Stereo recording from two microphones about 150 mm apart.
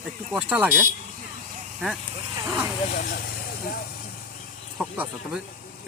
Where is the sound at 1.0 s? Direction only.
50° right (ahead or behind).